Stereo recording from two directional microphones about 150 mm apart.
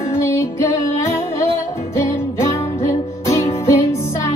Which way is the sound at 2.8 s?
20° left (ahead or behind).